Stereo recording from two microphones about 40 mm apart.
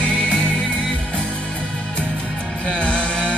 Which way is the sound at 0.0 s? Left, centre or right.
Left.